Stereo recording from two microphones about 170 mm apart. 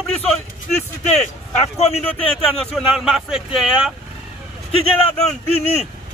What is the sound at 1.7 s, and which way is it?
Speech, 40° left (ahead or behind).